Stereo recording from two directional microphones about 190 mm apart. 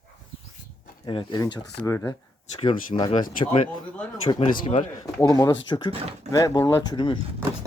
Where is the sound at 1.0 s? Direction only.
25° left (ahead or behind).